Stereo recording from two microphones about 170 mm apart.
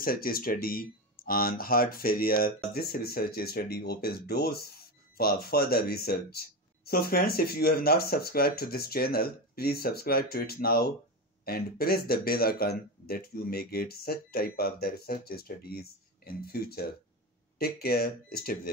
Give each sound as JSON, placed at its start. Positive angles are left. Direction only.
{"t": 0.0, "sound": "speech", "side_deg": 60}